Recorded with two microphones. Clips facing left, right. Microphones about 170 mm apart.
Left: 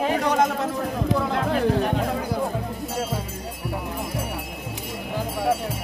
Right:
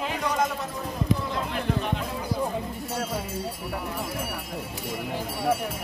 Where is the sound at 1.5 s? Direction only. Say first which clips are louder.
Left 8 dB; 45° left (ahead or behind).